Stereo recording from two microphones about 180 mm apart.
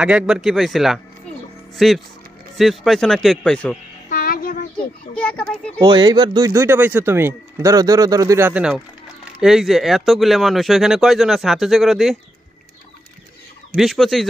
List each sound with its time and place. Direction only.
0.0 s speech: 5° right (ahead or behind)
4.1 s child singing: 50° left (ahead or behind)
5.1 s a child's voice: 5° left (ahead or behind)
5.8 s speech: 25° right (ahead or behind); by 12.2 s centre (ahead or behind)
13.7 s speech: centre (ahead or behind)